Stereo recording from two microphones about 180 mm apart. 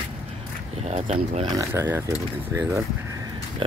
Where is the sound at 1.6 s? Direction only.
15° right (ahead or behind).